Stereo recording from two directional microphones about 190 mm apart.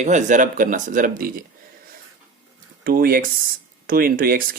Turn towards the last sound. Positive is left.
turn(degrees=-50)  # may be behind; listen again after turning